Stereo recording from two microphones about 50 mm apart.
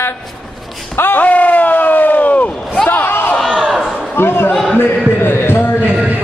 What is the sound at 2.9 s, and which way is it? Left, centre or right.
Slam, left.